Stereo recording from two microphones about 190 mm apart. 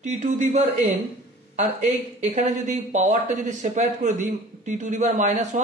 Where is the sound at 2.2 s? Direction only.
40° right (ahead or behind).